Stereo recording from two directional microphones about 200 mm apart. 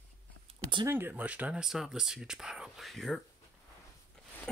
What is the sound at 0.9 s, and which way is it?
Speech, 10° right (ahead or behind).